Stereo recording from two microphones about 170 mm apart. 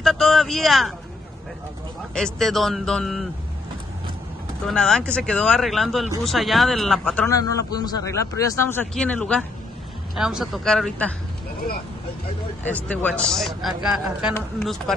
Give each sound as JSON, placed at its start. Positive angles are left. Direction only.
{"t": 0.0, "sound": "speech", "side_deg": 0}
{"t": 2.1, "sound": "a man's voice", "side_deg": 5}
{"t": 4.6, "sound": "a man's voice", "side_deg": 5}
{"t": 7.2, "sound": "a man's voice", "side_deg": 20}
{"t": 12.6, "sound": "a man's voice", "side_deg": 10}